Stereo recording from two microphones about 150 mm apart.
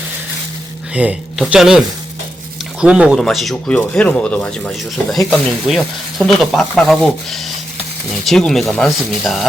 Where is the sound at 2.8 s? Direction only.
5° right (ahead or behind).